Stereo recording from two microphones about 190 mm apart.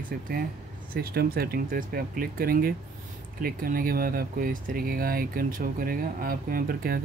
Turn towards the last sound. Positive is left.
turn(degrees=-50)  # may be behind; listen again after turning